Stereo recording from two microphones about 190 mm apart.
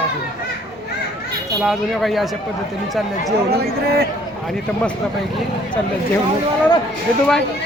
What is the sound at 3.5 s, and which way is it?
Speech, 55° right (ahead or behind).